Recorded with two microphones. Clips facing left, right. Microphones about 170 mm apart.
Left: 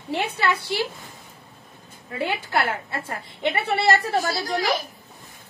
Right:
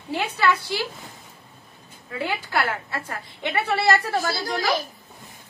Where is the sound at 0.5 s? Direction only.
55° left (ahead or behind).